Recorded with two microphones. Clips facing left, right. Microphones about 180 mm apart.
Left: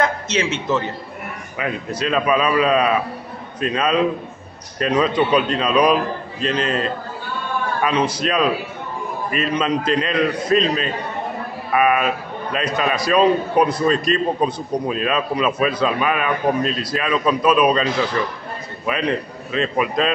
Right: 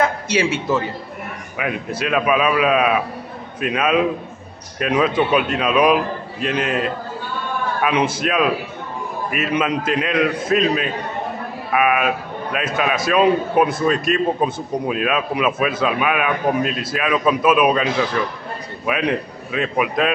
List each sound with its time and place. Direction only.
0.0 s a man's voice: 10° right (ahead or behind)